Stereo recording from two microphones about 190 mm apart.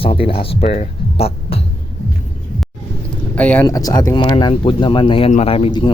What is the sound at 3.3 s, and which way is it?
Speech, 5° left (ahead or behind).